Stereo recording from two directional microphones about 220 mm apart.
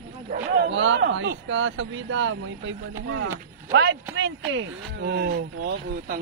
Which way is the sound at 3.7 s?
50° right (ahead or behind).